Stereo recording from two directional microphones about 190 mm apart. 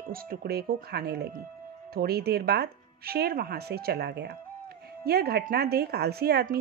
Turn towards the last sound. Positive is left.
turn(degrees=-55)  # may be behind; listen again after turning